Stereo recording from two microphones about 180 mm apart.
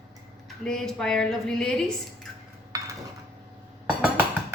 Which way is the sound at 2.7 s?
20° right (ahead or behind).